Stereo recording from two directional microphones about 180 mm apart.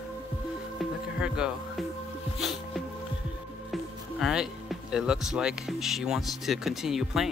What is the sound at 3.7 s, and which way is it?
Speech, centre (ahead or behind).